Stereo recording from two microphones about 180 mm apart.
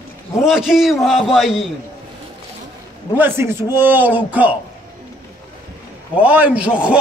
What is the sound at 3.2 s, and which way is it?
A man's voice, 10° right (ahead or behind).